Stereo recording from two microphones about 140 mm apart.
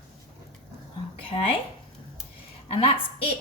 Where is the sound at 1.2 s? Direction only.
40° left (ahead or behind).